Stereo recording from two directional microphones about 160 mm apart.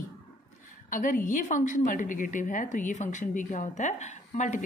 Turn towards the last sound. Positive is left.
turn(degrees=50)  # may be behind; listen again after turning